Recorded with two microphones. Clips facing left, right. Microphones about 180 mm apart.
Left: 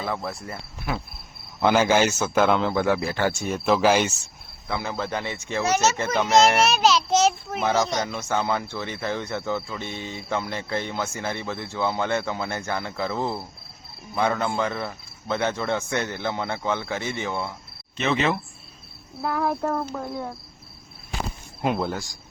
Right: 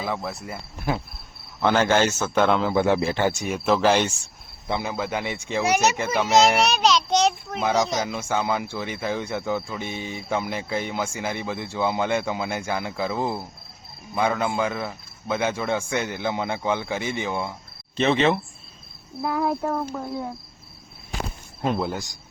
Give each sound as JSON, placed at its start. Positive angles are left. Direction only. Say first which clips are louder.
{"t": 0.0, "sound": "speech", "louder": "right 1 dB", "side_deg": 0}
{"t": 1.6, "sound": "speech", "louder": "left 1 dB", "side_deg": 10}
{"t": 2.7, "sound": "speech", "louder": "right 2 dB", "side_deg": -25}
{"t": 3.7, "sound": "speech", "louder": "even", "side_deg": 5}
{"t": 4.7, "sound": "a child's voice", "louder": "right 2 dB", "side_deg": -15}
{"t": 17.9, "sound": "speech", "louder": "right 4 dB", "side_deg": -30}
{"t": 19.2, "sound": "a child's voice", "louder": "right 1 dB", "side_deg": -15}
{"t": 21.8, "sound": "speech", "louder": "even", "side_deg": -20}